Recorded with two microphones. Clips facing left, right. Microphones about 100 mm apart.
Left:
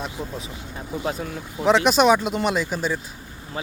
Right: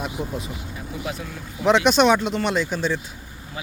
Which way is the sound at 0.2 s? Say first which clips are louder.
Right 3 dB; centre (ahead or behind).